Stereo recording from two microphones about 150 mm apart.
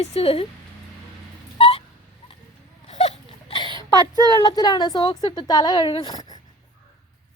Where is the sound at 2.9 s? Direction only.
45° left (ahead or behind).